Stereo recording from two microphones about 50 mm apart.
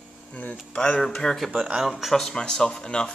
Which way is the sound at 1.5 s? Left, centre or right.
Centre.